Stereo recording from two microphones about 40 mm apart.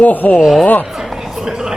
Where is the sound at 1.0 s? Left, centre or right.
Centre.